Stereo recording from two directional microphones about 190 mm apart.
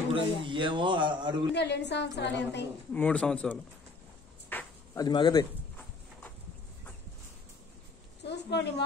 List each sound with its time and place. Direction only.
0.1 s a man's voice: 25° right (ahead or behind)
1.5 s a woman's voice: 65° left (ahead or behind)
2.9 s speech: 5° left (ahead or behind)
4.5 s a sound: 10° left (ahead or behind)
5.0 s a man's voice: 20° left (ahead or behind)
8.2 s a woman's voice: 65° left (ahead or behind)